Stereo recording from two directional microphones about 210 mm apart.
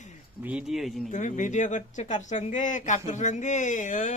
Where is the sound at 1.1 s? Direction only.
35° left (ahead or behind).